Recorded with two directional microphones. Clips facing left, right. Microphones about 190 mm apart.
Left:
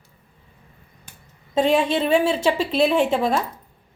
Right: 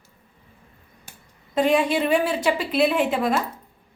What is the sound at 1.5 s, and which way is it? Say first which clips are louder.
A woman's voice: left 1 dB; 25° left (ahead or behind).